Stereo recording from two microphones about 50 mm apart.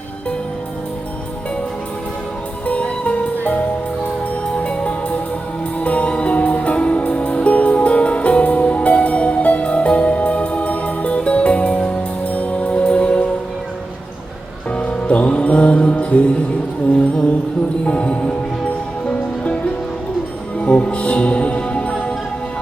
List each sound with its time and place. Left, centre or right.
2.6 s music: left
4.4 s music: left
14.7 s music: left
17.8 s music: left
20.6 s music: left